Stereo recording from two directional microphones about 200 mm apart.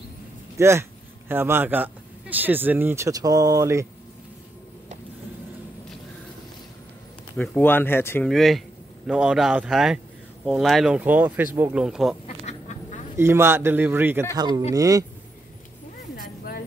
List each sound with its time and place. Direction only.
0.6 s speech: 15° right (ahead or behind)
7.3 s speech: 5° left (ahead or behind)
8.3 s speech: centre (ahead or behind)
12.4 s duck: 35° left (ahead or behind)
13.2 s speech: 10° right (ahead or behind)
14.3 s speech: 20° right (ahead or behind)
16.2 s a sound: 50° left (ahead or behind)